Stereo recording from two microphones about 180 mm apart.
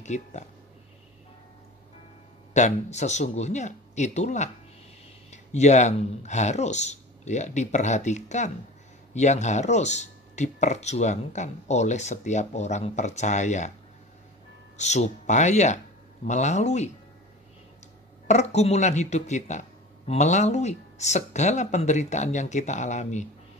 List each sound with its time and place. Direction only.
0.0 s speech: 40° left (ahead or behind)
2.5 s speech: 40° left (ahead or behind)
14.8 s speech: 40° left (ahead or behind)
18.2 s speech: 40° left (ahead or behind)